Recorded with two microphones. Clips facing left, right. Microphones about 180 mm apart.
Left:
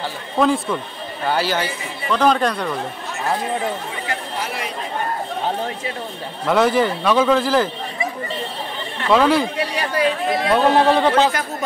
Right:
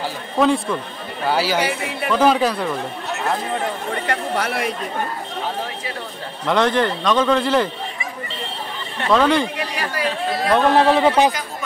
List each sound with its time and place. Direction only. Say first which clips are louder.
0.4 s speech: even; centre (ahead or behind)
1.6 s speech: right 4 dB; 70° right (ahead or behind)
2.0 s speech: right 1 dB; 5° right (ahead or behind)
3.9 s speech: right 5 dB; 65° right (ahead or behind)
6.4 s speech: left 1 dB; 5° left (ahead or behind)
9.1 s speech: left 1 dB; 5° left (ahead or behind)
9.8 s speech: left 4 dB; 25° left (ahead or behind)
10.5 s speech: even; centre (ahead or behind)